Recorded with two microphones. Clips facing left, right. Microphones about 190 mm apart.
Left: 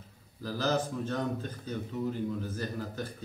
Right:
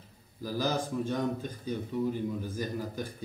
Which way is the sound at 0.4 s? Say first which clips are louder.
Left 1 dB; 10° right (ahead or behind).